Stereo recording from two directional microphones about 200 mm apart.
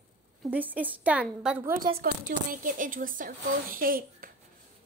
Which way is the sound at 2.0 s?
45° right (ahead or behind).